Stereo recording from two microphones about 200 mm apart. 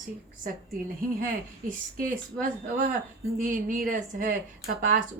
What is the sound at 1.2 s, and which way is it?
A woman's voice, 45° right (ahead or behind).